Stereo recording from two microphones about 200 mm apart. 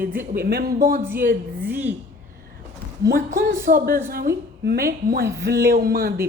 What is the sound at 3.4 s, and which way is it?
A woman's voice, 50° right (ahead or behind).